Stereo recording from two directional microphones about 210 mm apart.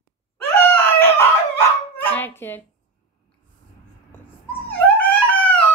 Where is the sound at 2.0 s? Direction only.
10° left (ahead or behind).